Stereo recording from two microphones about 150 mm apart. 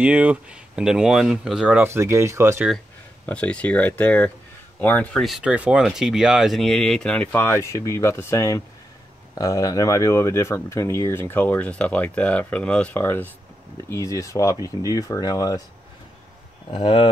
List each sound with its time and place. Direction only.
0.0 s speech: 10° right (ahead or behind)
1.9 s speech: 15° right (ahead or behind)
3.3 s speech: 10° left (ahead or behind); by 15.6 s 25° left (ahead or behind)
16.7 s speech: 35° left (ahead or behind)